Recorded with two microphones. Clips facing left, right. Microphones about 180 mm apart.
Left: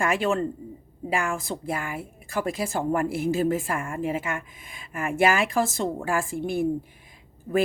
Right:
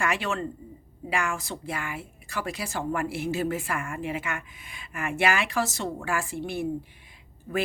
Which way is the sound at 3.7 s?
30° left (ahead or behind).